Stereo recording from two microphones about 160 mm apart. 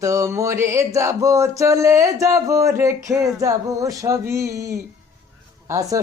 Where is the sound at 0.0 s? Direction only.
20° right (ahead or behind).